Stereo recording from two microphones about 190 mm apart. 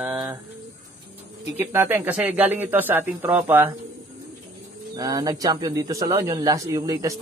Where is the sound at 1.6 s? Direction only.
10° right (ahead or behind).